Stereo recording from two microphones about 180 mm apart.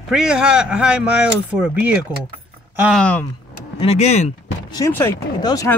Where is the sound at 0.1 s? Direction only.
5° right (ahead or behind).